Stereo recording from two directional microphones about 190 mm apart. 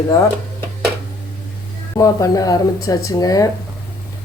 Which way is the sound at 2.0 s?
20° left (ahead or behind).